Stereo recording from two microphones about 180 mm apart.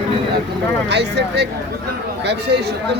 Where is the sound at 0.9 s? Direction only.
70° right (ahead or behind).